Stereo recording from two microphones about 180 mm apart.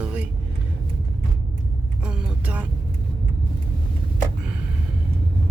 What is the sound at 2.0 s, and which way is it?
Vehicle, 5° right (ahead or behind).